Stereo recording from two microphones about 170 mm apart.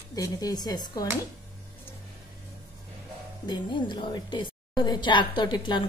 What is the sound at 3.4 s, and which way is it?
A woman's voice, 30° left (ahead or behind).